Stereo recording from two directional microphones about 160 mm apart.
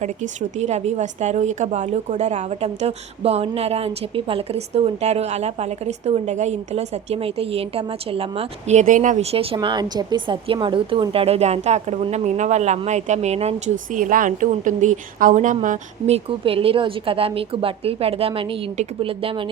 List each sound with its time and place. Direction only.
0.0 s a woman's voice: 45° right (ahead or behind)
9.3 s speech: 35° right (ahead or behind)